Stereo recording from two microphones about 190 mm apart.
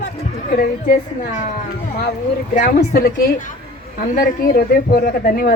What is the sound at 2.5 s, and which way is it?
Speech, 40° left (ahead or behind).